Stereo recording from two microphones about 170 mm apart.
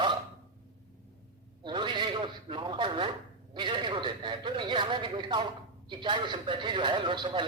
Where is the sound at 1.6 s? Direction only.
25° right (ahead or behind).